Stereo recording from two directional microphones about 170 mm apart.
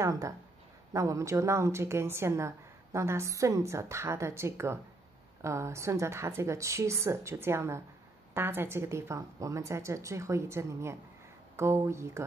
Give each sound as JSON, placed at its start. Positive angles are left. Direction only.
{"t": 0.0, "sound": "a woman's voice", "side_deg": -20}